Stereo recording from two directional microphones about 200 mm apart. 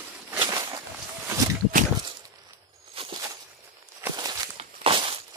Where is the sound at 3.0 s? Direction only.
30° right (ahead or behind).